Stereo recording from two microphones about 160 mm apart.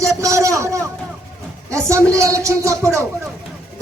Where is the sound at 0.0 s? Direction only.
20° right (ahead or behind).